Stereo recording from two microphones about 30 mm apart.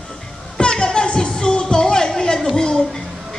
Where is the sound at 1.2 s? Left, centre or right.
Left.